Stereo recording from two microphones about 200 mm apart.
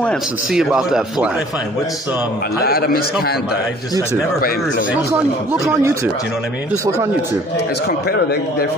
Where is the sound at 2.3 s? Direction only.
50° left (ahead or behind).